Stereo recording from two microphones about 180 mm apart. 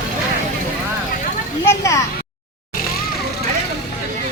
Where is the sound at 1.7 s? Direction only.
15° left (ahead or behind).